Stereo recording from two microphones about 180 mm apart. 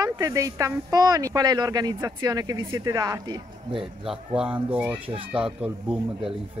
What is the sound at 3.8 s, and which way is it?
Speech, centre (ahead or behind).